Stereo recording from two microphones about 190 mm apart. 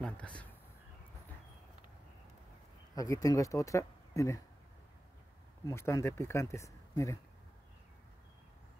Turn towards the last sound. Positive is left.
turn(degrees=15)  # may be behind; listen again after turning